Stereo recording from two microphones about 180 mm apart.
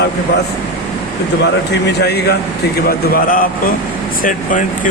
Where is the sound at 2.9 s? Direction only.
55° left (ahead or behind).